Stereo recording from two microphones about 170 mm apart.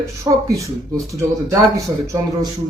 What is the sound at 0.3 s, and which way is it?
A man's voice, 20° right (ahead or behind).